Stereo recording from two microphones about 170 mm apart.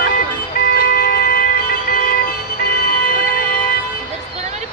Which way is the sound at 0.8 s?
60° left (ahead or behind).